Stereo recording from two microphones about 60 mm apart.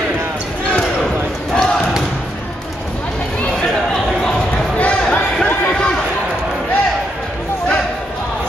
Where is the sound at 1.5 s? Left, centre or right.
Centre.